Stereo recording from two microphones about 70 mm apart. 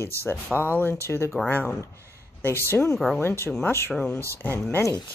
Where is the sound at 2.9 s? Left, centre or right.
Centre.